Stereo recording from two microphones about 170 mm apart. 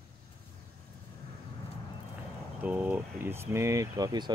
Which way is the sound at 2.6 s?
10° right (ahead or behind).